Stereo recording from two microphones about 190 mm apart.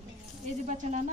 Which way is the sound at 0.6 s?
40° right (ahead or behind).